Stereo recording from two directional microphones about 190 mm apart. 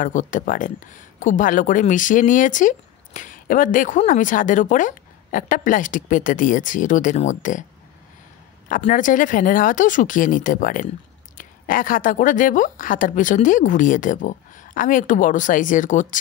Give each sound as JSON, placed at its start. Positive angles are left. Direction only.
{"t": 0.0, "sound": "speech", "side_deg": 40}
{"t": 8.6, "sound": "speech", "side_deg": 45}